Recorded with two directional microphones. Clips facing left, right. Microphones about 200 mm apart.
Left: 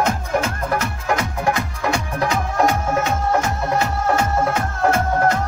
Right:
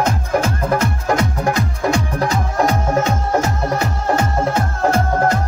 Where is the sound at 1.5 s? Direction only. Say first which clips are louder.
Right 1 dB; 35° right (ahead or behind).